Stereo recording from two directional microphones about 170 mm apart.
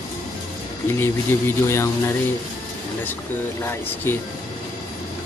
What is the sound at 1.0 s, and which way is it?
Speech, 15° left (ahead or behind).